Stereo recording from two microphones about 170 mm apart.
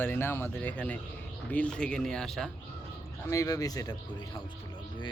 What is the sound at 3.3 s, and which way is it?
Speech, 20° left (ahead or behind).